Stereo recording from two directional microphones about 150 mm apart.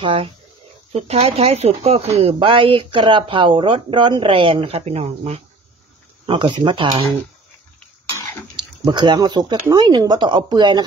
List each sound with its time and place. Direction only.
0.0 s speech: 35° right (ahead or behind)
8.5 s speech: 30° right (ahead or behind)